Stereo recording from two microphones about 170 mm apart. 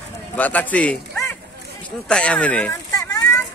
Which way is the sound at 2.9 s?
20° left (ahead or behind).